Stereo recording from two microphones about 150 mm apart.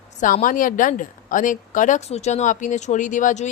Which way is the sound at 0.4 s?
65° left (ahead or behind).